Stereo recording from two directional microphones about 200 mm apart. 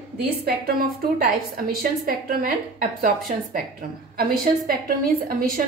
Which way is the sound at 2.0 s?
50° right (ahead or behind).